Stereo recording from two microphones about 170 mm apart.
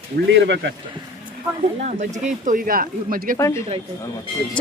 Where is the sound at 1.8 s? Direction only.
45° right (ahead or behind).